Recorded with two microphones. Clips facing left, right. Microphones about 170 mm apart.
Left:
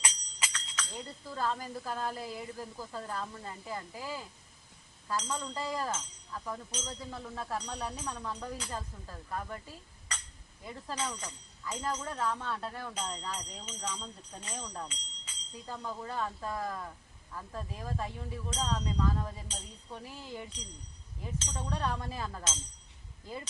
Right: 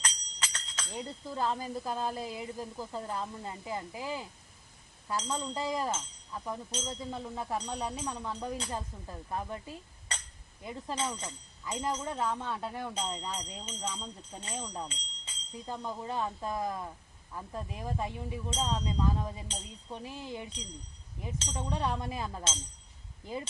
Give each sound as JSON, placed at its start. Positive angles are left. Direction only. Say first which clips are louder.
{"t": 0.0, "sound": "jingle bell", "louder": "even", "side_deg": 10}
{"t": 0.9, "sound": "speech", "louder": "right 4 dB", "side_deg": -20}
{"t": 13.1, "sound": "speech", "louder": "right 2 dB", "side_deg": -25}
{"t": 14.8, "sound": "a sound", "louder": "right 2 dB", "side_deg": -30}
{"t": 15.7, "sound": "speech", "louder": "right 2 dB", "side_deg": -20}